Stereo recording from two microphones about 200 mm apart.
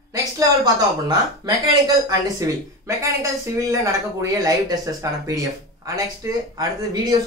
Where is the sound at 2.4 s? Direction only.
15° right (ahead or behind).